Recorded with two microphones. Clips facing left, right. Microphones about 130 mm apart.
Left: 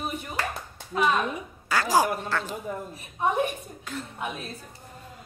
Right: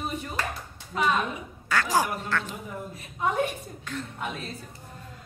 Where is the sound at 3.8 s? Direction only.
10° left (ahead or behind).